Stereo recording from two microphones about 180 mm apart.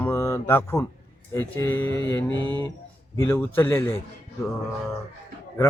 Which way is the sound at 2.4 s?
25° right (ahead or behind).